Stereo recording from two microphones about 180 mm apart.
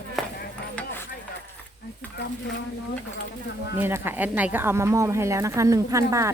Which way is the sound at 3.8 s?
10° right (ahead or behind).